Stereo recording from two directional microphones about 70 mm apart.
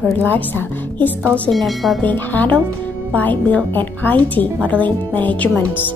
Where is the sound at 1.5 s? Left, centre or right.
Centre.